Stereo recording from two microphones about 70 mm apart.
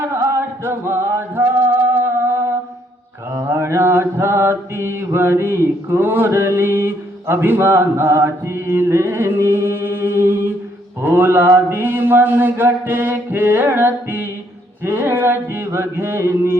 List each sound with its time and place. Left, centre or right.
0.0 s music: right
3.3 s mantra: right
14.8 s a sound: right